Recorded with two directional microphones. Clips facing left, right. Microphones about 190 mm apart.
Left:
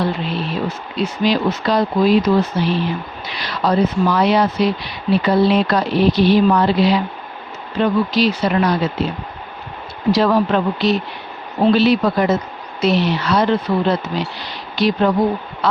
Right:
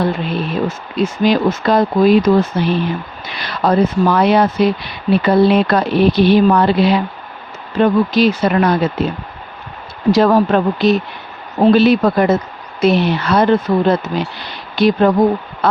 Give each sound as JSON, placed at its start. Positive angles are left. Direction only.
{"t": 0.0, "sound": "speech", "side_deg": -50}
{"t": 10.1, "sound": "speech", "side_deg": -45}
{"t": 15.6, "sound": "a sound", "side_deg": -55}